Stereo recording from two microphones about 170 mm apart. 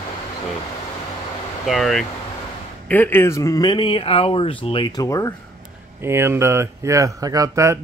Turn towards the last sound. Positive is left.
turn(degrees=-20)  # may be behind; listen again after turning